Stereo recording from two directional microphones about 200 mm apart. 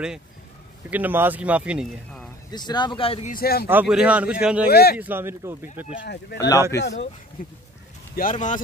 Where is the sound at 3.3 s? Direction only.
50° left (ahead or behind).